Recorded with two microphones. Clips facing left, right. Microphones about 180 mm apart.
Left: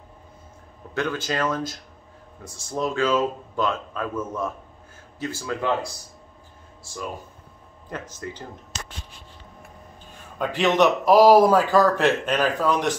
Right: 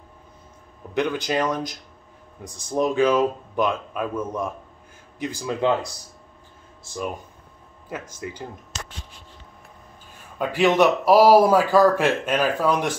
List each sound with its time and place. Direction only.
0.9 s a man's voice: 15° right (ahead or behind)
7.9 s a man's voice: 10° right (ahead or behind)
10.4 s a man's voice: 10° right (ahead or behind)